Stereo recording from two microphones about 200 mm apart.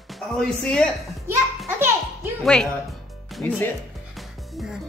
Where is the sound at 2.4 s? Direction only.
Centre (ahead or behind).